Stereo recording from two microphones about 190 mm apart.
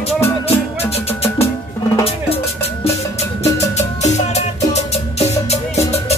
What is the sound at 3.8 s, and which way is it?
Music, 35° left (ahead or behind).